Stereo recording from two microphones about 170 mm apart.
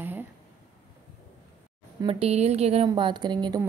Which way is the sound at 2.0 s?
35° right (ahead or behind).